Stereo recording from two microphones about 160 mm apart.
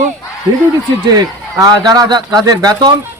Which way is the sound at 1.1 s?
25° right (ahead or behind).